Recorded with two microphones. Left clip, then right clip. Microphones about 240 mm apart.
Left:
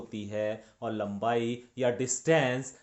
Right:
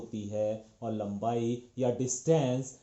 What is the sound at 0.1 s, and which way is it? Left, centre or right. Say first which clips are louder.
Speech: even; left.